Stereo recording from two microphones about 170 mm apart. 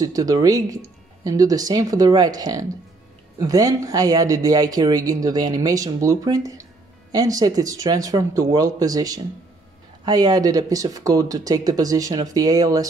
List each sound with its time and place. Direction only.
0.0 s speech: 20° right (ahead or behind)